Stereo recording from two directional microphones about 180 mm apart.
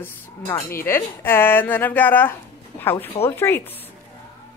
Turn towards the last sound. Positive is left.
turn(degrees=10)  # may be behind; listen again after turning